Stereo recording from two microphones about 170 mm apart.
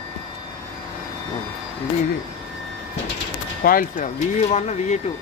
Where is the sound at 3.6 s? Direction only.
55° left (ahead or behind).